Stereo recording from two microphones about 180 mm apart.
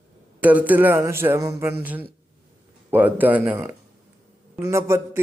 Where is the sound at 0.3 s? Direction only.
10° right (ahead or behind).